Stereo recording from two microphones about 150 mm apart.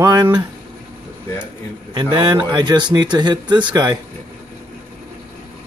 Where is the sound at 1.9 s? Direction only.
30° right (ahead or behind).